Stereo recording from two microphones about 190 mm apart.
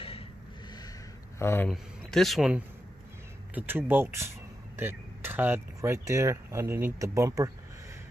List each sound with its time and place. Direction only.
0.0 s a sound: 30° left (ahead or behind)
1.4 s speech: 10° left (ahead or behind)
1.7 s speech: centre (ahead or behind); by 7.5 s 15° right (ahead or behind)